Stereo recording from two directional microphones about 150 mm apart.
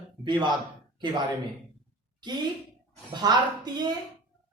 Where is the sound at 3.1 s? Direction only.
30° right (ahead or behind).